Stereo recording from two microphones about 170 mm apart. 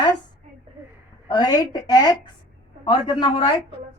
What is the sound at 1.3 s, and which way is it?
A woman's voice, 20° left (ahead or behind).